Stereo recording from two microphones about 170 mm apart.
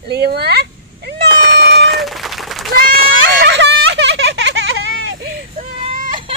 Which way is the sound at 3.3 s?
90° right.